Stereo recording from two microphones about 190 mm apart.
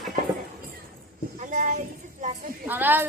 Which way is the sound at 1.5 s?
40° right (ahead or behind).